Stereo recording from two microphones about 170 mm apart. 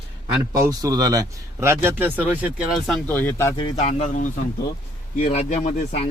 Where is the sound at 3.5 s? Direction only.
30° left (ahead or behind).